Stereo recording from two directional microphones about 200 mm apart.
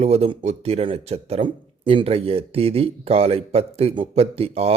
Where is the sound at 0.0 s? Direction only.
30° right (ahead or behind).